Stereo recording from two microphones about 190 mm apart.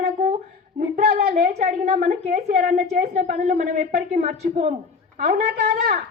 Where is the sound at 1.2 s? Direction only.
55° right (ahead or behind).